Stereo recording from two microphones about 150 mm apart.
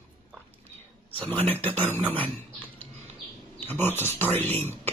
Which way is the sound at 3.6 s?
15° left (ahead or behind).